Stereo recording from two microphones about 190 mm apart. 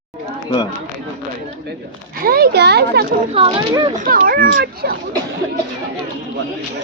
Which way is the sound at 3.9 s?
45° right (ahead or behind).